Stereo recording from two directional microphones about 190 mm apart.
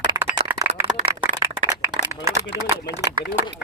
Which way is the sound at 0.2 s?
10° right (ahead or behind).